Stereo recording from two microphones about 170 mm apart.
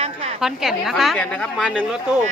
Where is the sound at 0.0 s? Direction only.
35° right (ahead or behind).